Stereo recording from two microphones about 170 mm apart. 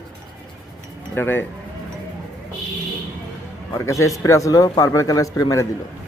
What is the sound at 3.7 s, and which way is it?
Speech, 20° left (ahead or behind).